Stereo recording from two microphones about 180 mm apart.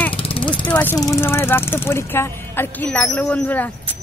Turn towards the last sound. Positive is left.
turn(degrees=10)  # may be behind; listen again after turning